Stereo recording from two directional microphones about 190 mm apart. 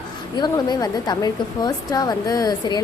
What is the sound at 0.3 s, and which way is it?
A woman's voice, 20° left (ahead or behind).